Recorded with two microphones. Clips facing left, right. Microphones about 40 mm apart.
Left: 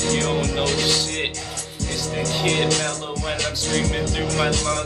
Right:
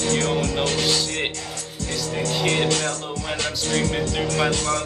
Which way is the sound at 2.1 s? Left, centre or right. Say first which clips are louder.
Even; centre.